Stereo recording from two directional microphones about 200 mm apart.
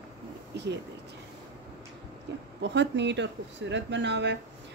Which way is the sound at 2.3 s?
60° right (ahead or behind).